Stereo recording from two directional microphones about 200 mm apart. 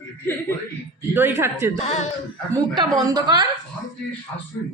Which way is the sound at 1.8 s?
35° left (ahead or behind).